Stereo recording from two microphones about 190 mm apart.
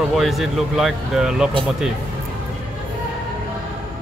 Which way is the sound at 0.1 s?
Centre (ahead or behind).